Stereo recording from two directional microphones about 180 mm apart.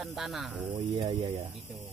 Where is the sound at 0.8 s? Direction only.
40° right (ahead or behind).